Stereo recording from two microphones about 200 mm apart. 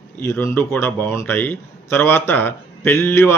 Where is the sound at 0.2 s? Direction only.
10° left (ahead or behind).